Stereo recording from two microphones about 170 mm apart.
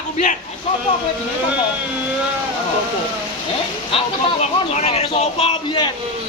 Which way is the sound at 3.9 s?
40° left (ahead or behind).